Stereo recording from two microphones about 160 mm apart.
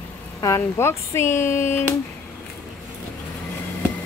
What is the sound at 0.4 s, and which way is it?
Speech, 15° left (ahead or behind).